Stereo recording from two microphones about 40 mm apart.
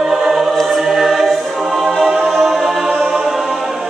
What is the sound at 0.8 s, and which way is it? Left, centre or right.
Choir, centre.